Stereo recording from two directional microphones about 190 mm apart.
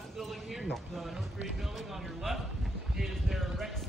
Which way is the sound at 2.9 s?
Centre (ahead or behind).